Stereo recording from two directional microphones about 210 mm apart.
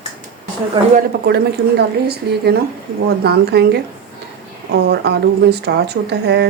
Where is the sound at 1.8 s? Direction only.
50° right (ahead or behind).